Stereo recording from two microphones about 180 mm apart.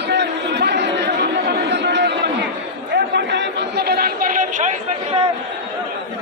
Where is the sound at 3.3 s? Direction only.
65° right (ahead or behind); by 4.7 s 45° right (ahead or behind).